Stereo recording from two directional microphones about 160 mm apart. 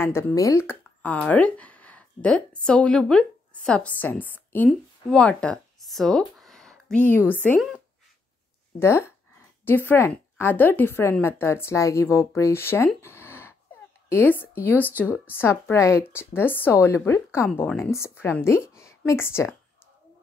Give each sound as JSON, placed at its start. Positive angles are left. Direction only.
{"t": 0.0, "sound": "speech", "side_deg": 15}
{"t": 4.6, "sound": "a sound", "side_deg": 5}
{"t": 7.1, "sound": "a woman's voice", "side_deg": 10}
{"t": 8.7, "sound": "a woman's voice", "side_deg": 15}